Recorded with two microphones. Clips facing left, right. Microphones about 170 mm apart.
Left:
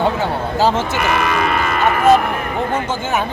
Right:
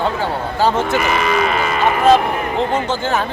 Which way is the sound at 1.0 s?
55° left (ahead or behind).